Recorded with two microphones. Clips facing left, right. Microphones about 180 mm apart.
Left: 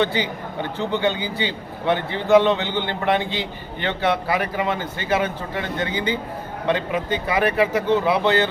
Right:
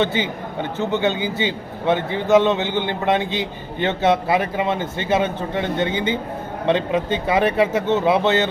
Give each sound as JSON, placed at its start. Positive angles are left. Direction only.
{"t": 0.0, "sound": "a man's voice", "side_deg": -20}